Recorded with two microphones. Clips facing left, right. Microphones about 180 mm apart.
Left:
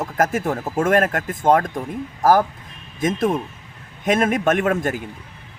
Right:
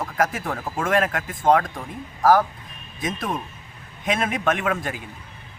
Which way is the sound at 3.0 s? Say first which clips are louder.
Left 7 dB; 50° left (ahead or behind).